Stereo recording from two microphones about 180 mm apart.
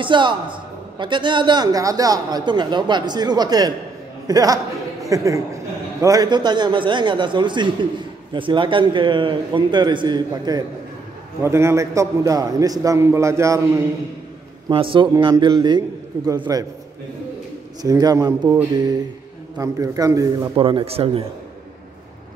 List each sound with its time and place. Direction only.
0.0 s a man's voice: 25° right (ahead or behind)
14.7 s a man's voice: 30° right (ahead or behind)
17.8 s a man's voice: 20° right (ahead or behind)
19.6 s a man's voice: 20° right (ahead or behind)
20.5 s speech: 30° right (ahead or behind)